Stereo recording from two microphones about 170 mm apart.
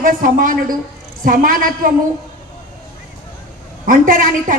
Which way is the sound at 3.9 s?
55° right (ahead or behind).